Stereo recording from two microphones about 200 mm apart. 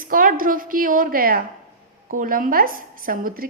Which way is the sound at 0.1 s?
45° right (ahead or behind).